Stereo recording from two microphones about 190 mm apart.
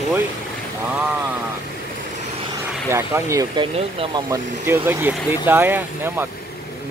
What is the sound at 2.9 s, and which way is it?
Speech, 15° right (ahead or behind).